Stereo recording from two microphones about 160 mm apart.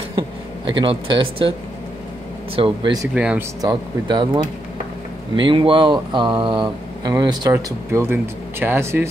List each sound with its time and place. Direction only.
0.7 s speech: 30° right (ahead or behind)
2.5 s speech: 30° right (ahead or behind)
3.2 s speech: 5° right (ahead or behind)
3.6 s speech: 30° right (ahead or behind)
5.3 s speech: 30° right (ahead or behind); by 9.1 s 15° right (ahead or behind)